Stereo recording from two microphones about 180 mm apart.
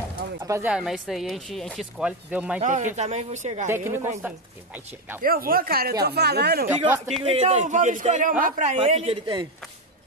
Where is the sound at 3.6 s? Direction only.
15° right (ahead or behind).